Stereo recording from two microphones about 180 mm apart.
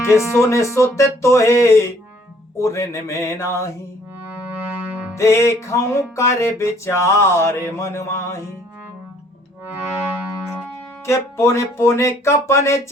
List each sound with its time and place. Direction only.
0.0 s music: 15° left (ahead or behind)
5.1 s music: 15° left (ahead or behind)
11.0 s music: 15° left (ahead or behind)